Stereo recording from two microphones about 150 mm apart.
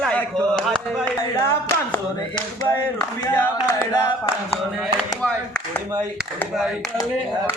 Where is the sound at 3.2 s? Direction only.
15° left (ahead or behind).